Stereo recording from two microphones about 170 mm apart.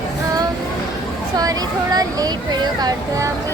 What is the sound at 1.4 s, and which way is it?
Speech, 20° right (ahead or behind).